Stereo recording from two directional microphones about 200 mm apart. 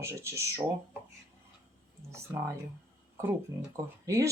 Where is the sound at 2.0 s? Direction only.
15° right (ahead or behind).